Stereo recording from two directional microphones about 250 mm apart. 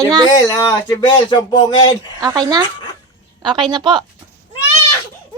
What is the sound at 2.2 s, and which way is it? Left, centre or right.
A woman's voice, centre.